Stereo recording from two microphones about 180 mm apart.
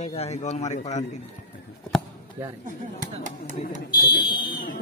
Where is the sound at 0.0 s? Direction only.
35° left (ahead or behind).